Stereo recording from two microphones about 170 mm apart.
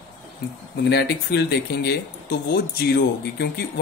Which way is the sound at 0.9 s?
75° left (ahead or behind).